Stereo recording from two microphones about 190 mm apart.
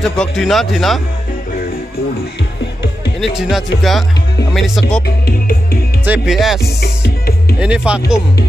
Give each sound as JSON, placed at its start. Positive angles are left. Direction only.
{"t": 0.0, "sound": "speech", "side_deg": 0}
{"t": 3.3, "sound": "speech", "side_deg": 0}
{"t": 5.0, "sound": "music", "side_deg": 50}
{"t": 6.0, "sound": "speech", "side_deg": -5}
{"t": 7.6, "sound": "speech", "side_deg": -5}